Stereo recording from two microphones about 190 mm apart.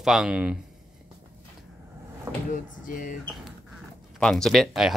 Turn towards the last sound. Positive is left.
turn(degrees=0)  # may be behind; listen again after turning